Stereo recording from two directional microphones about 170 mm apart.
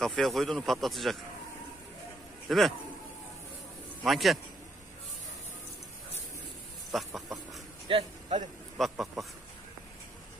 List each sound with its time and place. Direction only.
0.0 s speech: centre (ahead or behind)
2.4 s a man's voice: centre (ahead or behind)
4.0 s speech: centre (ahead or behind)
6.9 s chicken: centre (ahead or behind)
7.9 s a man's voice: 40° right (ahead or behind)
8.7 s speech: centre (ahead or behind)